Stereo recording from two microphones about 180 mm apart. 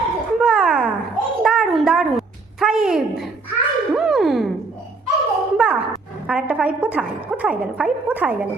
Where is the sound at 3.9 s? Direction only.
Centre (ahead or behind).